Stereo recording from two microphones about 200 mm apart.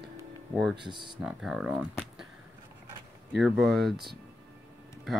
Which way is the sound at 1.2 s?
5° right (ahead or behind).